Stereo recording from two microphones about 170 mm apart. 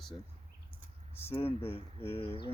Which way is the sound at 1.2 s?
35° left (ahead or behind).